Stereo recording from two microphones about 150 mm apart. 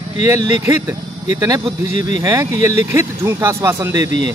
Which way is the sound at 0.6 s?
20° right (ahead or behind).